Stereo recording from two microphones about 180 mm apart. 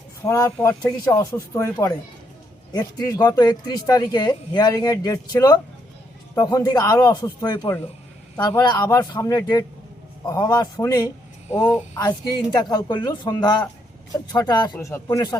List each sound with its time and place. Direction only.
0.2 s speech: 20° left (ahead or behind)